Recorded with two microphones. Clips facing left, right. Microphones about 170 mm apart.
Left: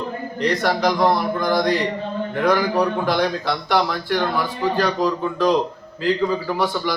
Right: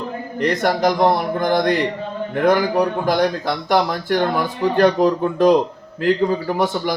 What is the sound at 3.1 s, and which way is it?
Speech, 45° right (ahead or behind).